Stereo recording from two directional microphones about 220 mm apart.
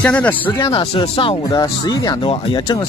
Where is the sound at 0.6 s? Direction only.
25° left (ahead or behind).